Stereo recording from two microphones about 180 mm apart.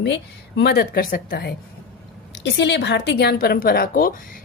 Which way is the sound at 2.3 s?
75° left (ahead or behind).